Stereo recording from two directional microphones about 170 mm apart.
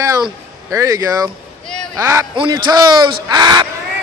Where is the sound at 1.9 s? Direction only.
15° right (ahead or behind).